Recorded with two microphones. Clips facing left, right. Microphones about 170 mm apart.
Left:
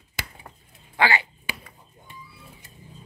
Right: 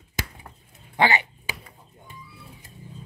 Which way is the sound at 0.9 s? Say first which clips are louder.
Right 1 dB; 20° right (ahead or behind).